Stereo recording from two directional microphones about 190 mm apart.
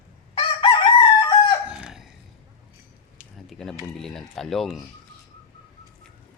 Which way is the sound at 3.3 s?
Centre (ahead or behind).